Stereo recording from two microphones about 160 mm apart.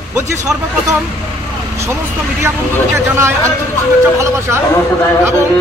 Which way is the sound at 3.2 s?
15° right (ahead or behind).